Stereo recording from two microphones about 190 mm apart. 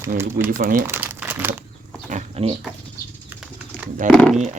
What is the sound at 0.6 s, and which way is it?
Speech, 45° right (ahead or behind).